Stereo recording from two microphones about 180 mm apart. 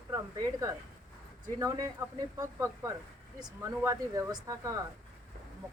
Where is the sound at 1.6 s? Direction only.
20° right (ahead or behind).